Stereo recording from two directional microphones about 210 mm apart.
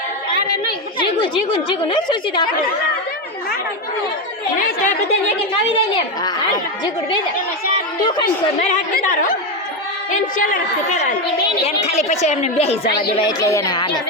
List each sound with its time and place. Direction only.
1.2 s a woman's voice: 20° left (ahead or behind)
8.7 s a woman's voice: 40° left (ahead or behind)
12.8 s speech: 45° left (ahead or behind)
13.1 s a woman's voice: 20° left (ahead or behind)